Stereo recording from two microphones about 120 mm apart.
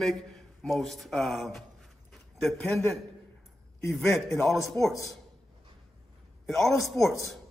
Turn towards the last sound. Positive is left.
turn(degrees=25)  # may be behind; listen again after turning